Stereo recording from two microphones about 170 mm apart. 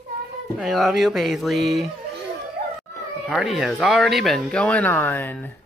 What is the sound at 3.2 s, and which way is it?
Speech, centre (ahead or behind).